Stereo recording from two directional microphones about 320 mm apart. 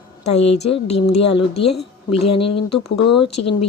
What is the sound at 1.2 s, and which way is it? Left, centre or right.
Speech, left.